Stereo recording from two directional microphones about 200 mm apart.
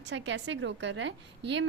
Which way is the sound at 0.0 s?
60° right (ahead or behind).